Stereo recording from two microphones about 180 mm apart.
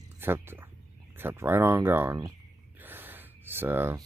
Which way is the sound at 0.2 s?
10° right (ahead or behind).